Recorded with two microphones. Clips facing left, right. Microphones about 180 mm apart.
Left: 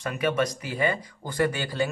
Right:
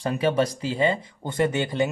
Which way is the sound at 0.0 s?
30° right (ahead or behind).